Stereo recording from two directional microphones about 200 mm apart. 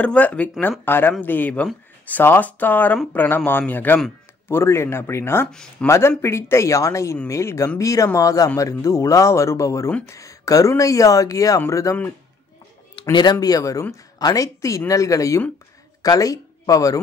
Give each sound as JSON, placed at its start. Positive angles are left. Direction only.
{"t": 0.0, "sound": "speech", "side_deg": 5}